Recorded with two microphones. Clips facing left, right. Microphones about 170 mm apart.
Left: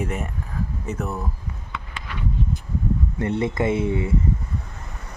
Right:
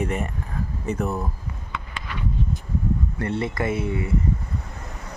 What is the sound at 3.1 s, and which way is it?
Speech, 20° left (ahead or behind).